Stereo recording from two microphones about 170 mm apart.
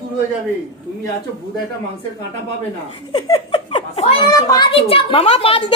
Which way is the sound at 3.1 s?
30° left (ahead or behind).